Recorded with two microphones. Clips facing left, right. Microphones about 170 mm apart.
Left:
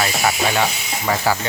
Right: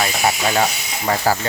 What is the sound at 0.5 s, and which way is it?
Speech, 35° right (ahead or behind).